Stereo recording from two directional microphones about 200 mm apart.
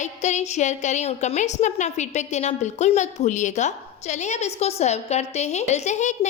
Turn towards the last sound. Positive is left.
turn(degrees=35)  # may be behind; listen again after turning